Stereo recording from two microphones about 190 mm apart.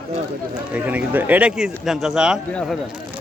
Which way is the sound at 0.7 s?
10° right (ahead or behind).